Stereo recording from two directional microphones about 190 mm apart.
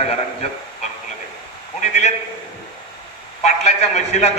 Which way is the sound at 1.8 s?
35° left (ahead or behind).